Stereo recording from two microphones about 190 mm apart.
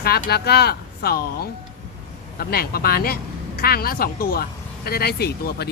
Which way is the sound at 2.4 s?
55° left (ahead or behind).